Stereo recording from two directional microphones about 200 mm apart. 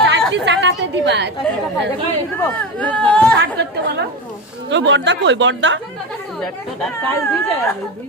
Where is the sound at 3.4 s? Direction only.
60° right (ahead or behind).